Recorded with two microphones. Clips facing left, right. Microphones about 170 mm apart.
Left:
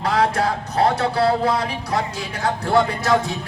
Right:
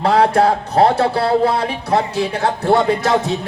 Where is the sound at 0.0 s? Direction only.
30° right (ahead or behind).